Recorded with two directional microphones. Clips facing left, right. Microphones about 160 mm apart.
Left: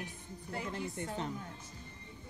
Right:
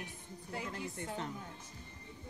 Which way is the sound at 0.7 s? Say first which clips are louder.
Left 4 dB; 20° left (ahead or behind).